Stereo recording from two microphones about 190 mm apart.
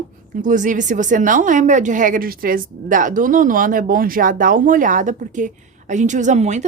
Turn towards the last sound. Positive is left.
turn(degrees=-40)  # may be behind; listen again after turning